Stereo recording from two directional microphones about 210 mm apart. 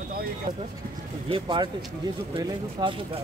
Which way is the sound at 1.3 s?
25° right (ahead or behind).